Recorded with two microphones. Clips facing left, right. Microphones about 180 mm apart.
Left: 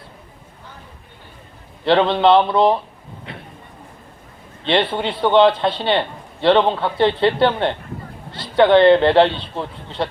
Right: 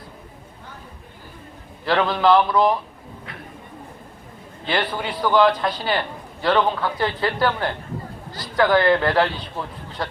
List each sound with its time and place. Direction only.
1.8 s a man's voice: 25° left (ahead or behind)
3.3 s a sound: 25° left (ahead or behind)
4.6 s a man's voice: 25° left (ahead or behind)